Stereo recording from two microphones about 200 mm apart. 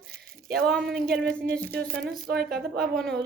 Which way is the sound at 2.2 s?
50° right (ahead or behind).